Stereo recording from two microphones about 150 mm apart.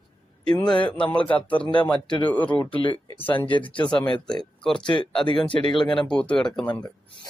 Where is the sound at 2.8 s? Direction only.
30° left (ahead or behind).